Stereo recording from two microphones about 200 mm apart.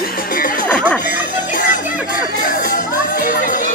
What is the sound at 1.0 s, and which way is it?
Music, 40° left (ahead or behind).